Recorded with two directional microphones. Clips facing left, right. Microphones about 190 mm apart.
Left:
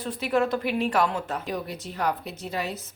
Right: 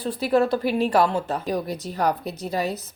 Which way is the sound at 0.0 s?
35° right (ahead or behind).